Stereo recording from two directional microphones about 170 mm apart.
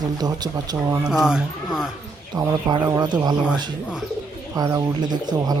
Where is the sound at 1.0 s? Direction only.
5° right (ahead or behind).